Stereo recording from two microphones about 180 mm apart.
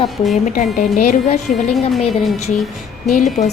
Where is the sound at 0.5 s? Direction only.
45° left (ahead or behind).